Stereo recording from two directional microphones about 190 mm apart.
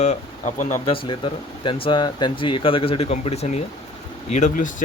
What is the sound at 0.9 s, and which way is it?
Speech, 25° left (ahead or behind).